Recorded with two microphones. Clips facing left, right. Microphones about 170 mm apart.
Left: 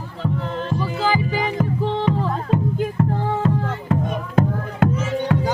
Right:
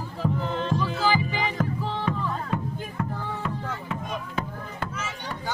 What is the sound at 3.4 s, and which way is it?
Music, 40° left (ahead or behind).